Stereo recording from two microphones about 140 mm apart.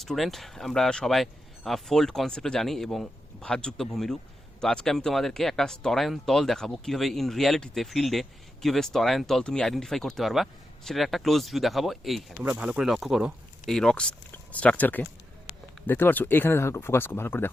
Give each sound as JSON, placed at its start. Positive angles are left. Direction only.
{"t": 0.0, "sound": "speech", "side_deg": 0}